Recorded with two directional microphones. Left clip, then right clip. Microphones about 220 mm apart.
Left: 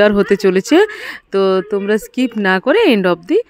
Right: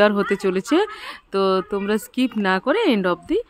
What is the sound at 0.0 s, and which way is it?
Speech, 25° left (ahead or behind).